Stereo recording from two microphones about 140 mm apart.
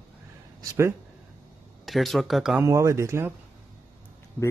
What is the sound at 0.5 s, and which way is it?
Speech, 20° right (ahead or behind).